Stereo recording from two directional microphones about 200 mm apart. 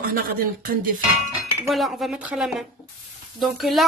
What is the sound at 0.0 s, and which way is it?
Speech, 50° right (ahead or behind).